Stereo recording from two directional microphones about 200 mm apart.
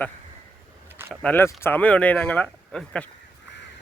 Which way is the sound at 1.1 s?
5° left (ahead or behind).